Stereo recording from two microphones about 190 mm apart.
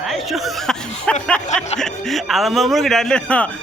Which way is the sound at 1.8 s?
Centre (ahead or behind).